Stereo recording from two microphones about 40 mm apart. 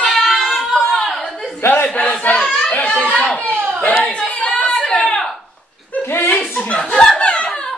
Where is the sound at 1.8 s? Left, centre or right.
Left.